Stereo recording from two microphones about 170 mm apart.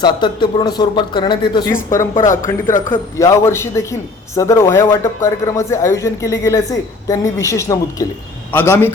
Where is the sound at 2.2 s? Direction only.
50° left (ahead or behind).